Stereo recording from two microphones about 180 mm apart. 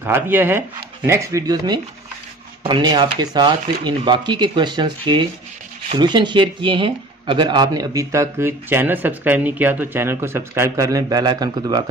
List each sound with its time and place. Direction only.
0.0 s speech: 10° right (ahead or behind)